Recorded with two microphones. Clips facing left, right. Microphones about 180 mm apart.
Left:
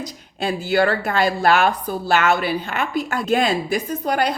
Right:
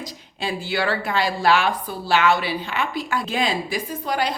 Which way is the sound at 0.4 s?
45° left (ahead or behind).